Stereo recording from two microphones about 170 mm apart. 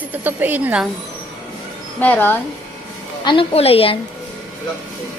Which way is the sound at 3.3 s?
35° left (ahead or behind).